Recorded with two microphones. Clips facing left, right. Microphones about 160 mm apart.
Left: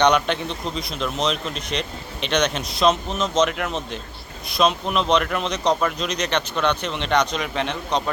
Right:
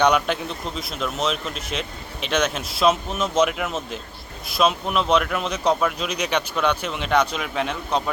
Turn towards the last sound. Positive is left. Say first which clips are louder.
# even
turn(degrees=-5)  # may be behind; listen again after turning